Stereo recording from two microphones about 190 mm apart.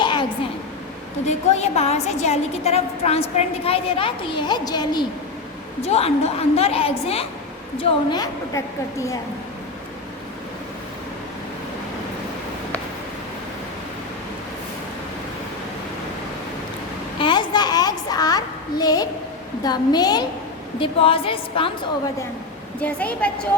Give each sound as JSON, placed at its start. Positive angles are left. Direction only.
{"t": 0.0, "sound": "a sound", "side_deg": 25}
{"t": 1.2, "sound": "a woman's voice", "side_deg": 35}
{"t": 5.8, "sound": "a woman's voice", "side_deg": 30}
{"t": 17.2, "sound": "a sound", "side_deg": 25}
{"t": 19.6, "sound": "a woman's voice", "side_deg": 20}
{"t": 22.8, "sound": "a woman's voice", "side_deg": 10}